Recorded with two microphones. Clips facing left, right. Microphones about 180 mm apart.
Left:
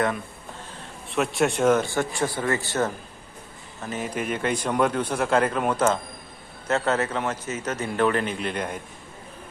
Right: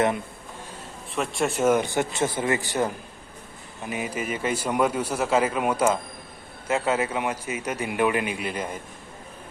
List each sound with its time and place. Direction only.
1.1 s a man's voice: centre (ahead or behind)
1.8 s a man's voice: 20° right (ahead or behind)